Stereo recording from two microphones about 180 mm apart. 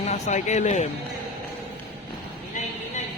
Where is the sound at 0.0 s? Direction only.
40° left (ahead or behind).